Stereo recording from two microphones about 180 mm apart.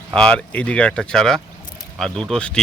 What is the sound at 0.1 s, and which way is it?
Speech, 5° left (ahead or behind).